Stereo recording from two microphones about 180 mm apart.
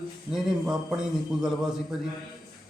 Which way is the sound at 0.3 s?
5° right (ahead or behind).